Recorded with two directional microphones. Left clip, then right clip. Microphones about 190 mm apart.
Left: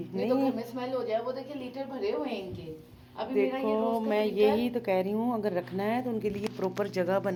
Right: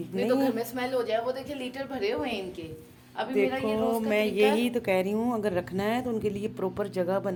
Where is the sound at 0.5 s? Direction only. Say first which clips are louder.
Right 4 dB; 40° right (ahead or behind).